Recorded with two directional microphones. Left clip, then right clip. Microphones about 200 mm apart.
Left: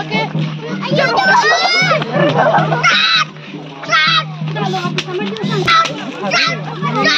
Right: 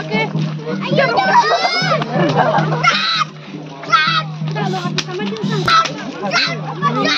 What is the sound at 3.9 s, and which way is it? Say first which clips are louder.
Music: left 2 dB; 55° right (ahead or behind).